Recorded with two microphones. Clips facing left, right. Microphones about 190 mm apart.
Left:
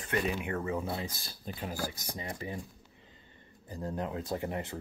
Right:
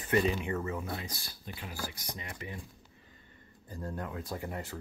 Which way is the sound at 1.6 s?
40° left (ahead or behind).